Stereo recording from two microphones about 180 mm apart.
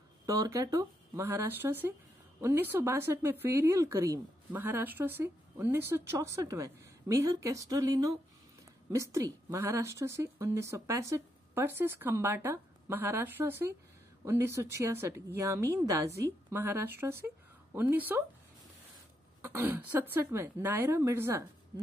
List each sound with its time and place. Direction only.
0.3 s speech: 20° right (ahead or behind)
19.4 s speech: 10° right (ahead or behind)